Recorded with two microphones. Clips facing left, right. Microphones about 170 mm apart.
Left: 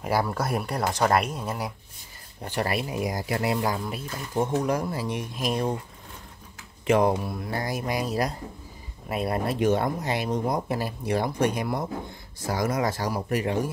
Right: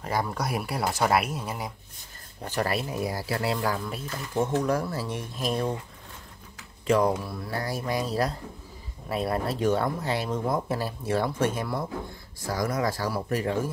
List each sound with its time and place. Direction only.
0.0 s speech: 5° left (ahead or behind)
2.4 s speech: 15° left (ahead or behind)
7.0 s speech: 25° left (ahead or behind)
9.1 s speech: 15° left (ahead or behind)